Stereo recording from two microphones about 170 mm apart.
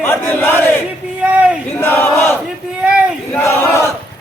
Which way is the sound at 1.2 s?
10° right (ahead or behind).